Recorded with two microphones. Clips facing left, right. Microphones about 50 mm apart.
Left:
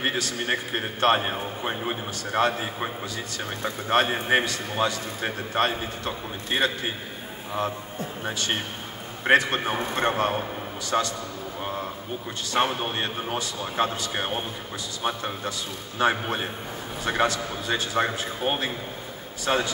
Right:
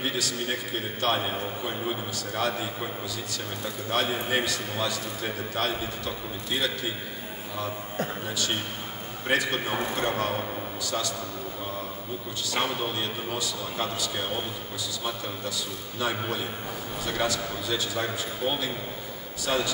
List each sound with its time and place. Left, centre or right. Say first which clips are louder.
0.0 s a man's voice: left 3 dB; left
9.3 s a man's voice: left 5 dB; left
12.4 s a man's voice: left 4 dB; left